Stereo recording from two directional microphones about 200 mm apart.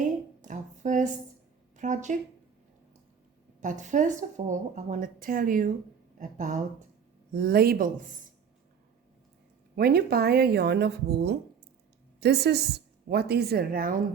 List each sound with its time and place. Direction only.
0.4 s a sound: 40° right (ahead or behind)
1.7 s speech: 40° right (ahead or behind)
3.6 s speech: 40° right (ahead or behind)
7.3 s speech: 50° right (ahead or behind)
9.7 s a woman's voice: 50° right (ahead or behind)